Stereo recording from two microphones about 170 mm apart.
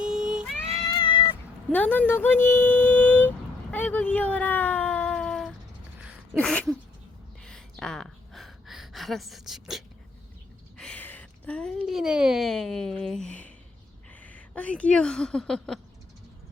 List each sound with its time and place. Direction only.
0.0 s cat: 5° right (ahead or behind)
0.8 s cat: 25° left (ahead or behind)
1.7 s a sound: 10° left (ahead or behind)
14.2 s speech: 10° left (ahead or behind)